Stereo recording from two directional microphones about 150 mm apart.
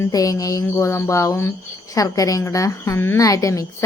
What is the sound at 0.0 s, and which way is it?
A woman's voice, 25° left (ahead or behind).